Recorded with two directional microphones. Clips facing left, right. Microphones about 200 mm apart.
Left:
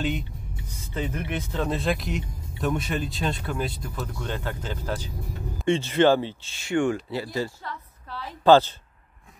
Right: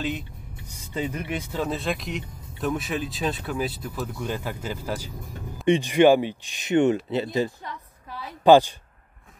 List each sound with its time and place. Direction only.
0.7 s a woman's voice: 10° right (ahead or behind)